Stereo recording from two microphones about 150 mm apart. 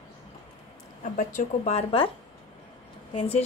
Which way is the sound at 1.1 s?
50° left (ahead or behind).